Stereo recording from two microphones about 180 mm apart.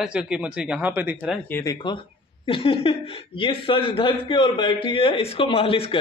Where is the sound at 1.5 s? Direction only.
20° left (ahead or behind).